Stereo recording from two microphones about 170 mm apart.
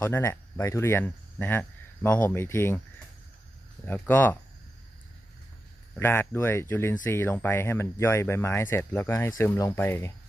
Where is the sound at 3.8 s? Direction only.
10° left (ahead or behind).